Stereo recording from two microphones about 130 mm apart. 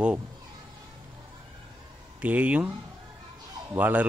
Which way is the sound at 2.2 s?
10° right (ahead or behind).